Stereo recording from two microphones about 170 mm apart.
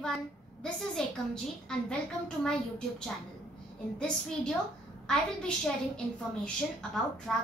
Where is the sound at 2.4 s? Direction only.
5° left (ahead or behind).